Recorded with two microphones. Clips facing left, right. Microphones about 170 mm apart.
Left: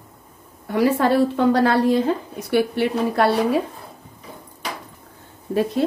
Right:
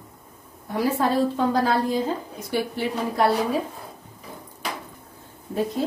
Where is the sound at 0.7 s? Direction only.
75° left (ahead or behind).